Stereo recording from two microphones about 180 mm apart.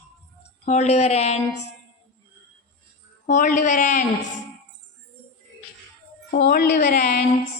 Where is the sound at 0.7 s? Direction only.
40° left (ahead or behind).